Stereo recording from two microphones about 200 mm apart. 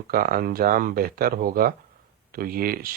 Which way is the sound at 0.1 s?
45° right (ahead or behind).